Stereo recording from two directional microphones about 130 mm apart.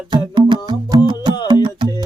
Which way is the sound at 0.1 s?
35° right (ahead or behind).